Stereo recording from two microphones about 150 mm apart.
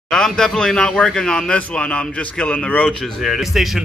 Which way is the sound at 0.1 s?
5° left (ahead or behind).